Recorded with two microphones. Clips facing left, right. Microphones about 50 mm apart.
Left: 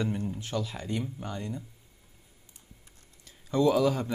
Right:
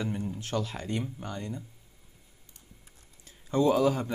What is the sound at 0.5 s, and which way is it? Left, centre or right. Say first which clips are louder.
Speech: right 3 dB; right.